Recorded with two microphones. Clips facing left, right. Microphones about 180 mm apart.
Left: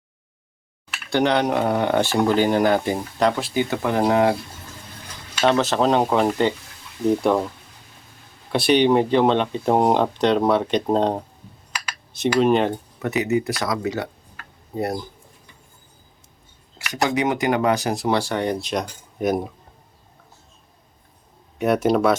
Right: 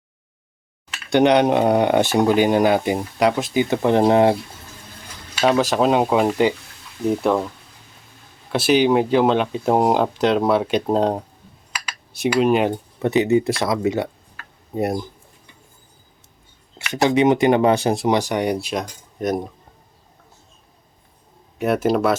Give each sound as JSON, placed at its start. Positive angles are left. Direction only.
{"t": 1.1, "sound": "speech", "side_deg": -20}
{"t": 5.4, "sound": "speech", "side_deg": -10}
{"t": 8.5, "sound": "speech", "side_deg": -5}
{"t": 13.0, "sound": "speech", "side_deg": -30}
{"t": 16.7, "sound": "speech", "side_deg": -25}
{"t": 21.6, "sound": "speech", "side_deg": 0}